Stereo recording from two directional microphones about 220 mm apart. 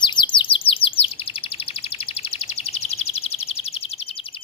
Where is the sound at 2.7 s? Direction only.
25° left (ahead or behind).